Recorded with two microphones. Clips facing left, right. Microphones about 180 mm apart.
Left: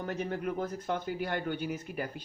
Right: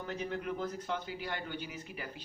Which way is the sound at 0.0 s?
50° left (ahead or behind).